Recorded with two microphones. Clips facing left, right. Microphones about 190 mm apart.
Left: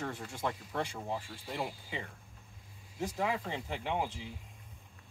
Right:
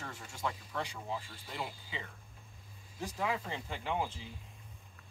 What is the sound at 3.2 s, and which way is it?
Speech, 15° left (ahead or behind).